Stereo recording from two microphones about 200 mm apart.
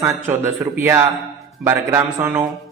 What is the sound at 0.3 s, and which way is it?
Speech, 10° right (ahead or behind).